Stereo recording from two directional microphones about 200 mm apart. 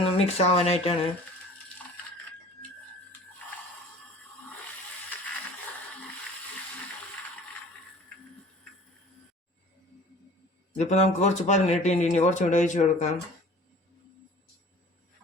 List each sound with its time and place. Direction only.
0.0 s speech: 30° left (ahead or behind)
10.8 s speech: 35° left (ahead or behind)